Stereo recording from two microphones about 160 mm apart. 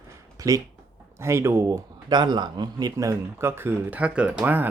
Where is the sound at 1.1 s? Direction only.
15° right (ahead or behind).